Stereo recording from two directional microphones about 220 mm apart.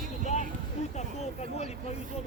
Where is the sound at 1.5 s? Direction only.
30° left (ahead or behind).